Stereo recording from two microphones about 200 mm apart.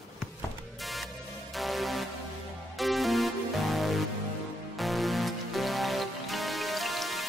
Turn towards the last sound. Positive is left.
turn(degrees=0)  # may be behind; listen again after turning